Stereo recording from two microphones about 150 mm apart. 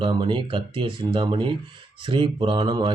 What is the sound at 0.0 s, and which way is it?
Speech, 35° right (ahead or behind).